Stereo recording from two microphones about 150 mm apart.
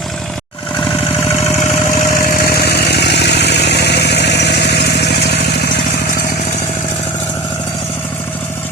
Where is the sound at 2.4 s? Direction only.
90° left.